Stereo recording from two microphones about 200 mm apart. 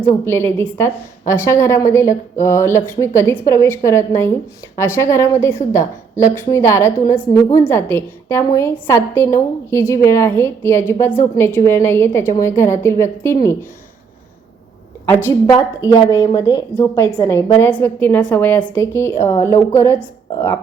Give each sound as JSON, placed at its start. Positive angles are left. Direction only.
{"t": 0.3, "sound": "a woman's voice", "side_deg": 10}
{"t": 15.1, "sound": "a woman's voice", "side_deg": 15}